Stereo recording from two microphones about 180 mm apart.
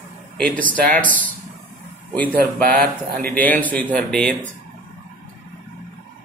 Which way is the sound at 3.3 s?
10° left (ahead or behind).